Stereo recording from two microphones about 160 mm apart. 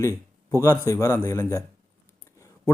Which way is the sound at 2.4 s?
20° left (ahead or behind).